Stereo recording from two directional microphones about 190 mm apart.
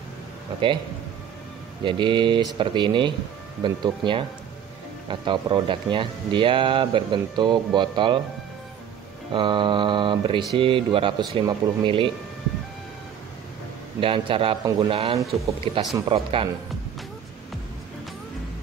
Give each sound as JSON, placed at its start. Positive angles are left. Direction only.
{"t": 1.8, "sound": "speech", "side_deg": -25}
{"t": 9.3, "sound": "speech", "side_deg": -25}
{"t": 13.9, "sound": "speech", "side_deg": -25}